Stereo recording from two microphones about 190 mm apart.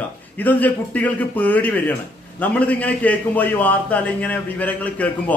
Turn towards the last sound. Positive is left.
turn(degrees=10)  # may be behind; listen again after turning